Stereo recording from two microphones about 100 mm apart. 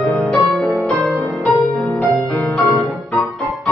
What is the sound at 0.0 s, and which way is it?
Music, 20° left (ahead or behind).